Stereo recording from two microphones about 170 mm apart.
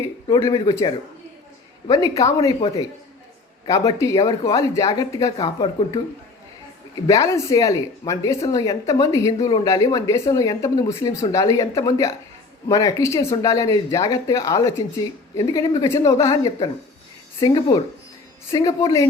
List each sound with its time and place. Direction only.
0.3 s speech: 20° left (ahead or behind)
3.7 s speech: 20° left (ahead or behind)
7.1 s speech: 20° left (ahead or behind)